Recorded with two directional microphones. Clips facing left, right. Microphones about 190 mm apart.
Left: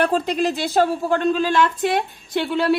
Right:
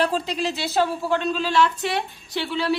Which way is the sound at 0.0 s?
50° left (ahead or behind).